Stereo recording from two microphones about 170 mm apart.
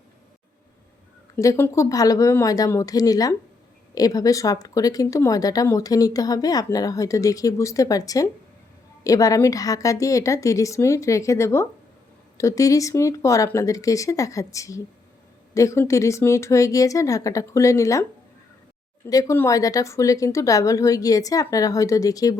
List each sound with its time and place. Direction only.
1.4 s speech: 15° left (ahead or behind)
19.0 s speech: 15° left (ahead or behind)